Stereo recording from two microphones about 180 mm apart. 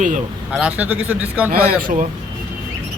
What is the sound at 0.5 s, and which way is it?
Speech, 5° right (ahead or behind).